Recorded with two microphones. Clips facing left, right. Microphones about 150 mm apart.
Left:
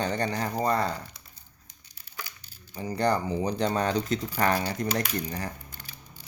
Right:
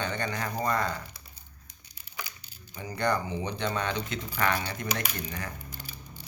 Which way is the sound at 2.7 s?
35° left (ahead or behind).